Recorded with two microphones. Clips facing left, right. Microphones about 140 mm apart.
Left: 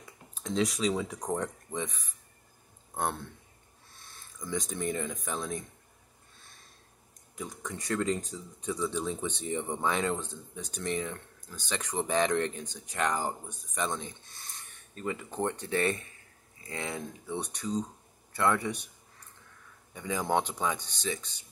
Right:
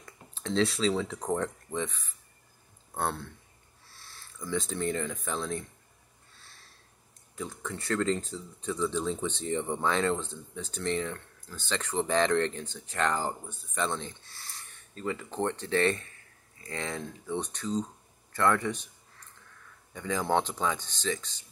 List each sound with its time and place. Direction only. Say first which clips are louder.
0.0 s speech: right 3 dB; 10° left (ahead or behind)
7.3 s speech: right 2 dB; 15° left (ahead or behind)
18.3 s a sound: right 2 dB; 10° left (ahead or behind)
19.9 s speech: right 1 dB; 15° left (ahead or behind)